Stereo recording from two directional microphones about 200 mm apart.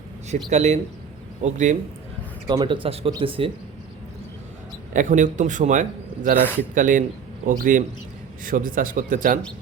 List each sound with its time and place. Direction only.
0.5 s a man's voice: 35° right (ahead or behind)
2.5 s speech: 25° right (ahead or behind)
4.9 s a man's voice: 40° right (ahead or behind)
6.4 s a man's voice: 10° left (ahead or behind)
6.7 s a man's voice: 40° right (ahead or behind)